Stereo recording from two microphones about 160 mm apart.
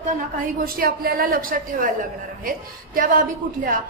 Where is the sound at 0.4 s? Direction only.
65° right (ahead or behind).